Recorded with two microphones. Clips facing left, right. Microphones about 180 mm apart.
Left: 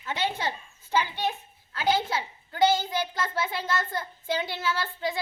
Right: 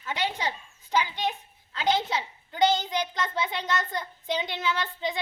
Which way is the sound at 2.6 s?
20° right (ahead or behind).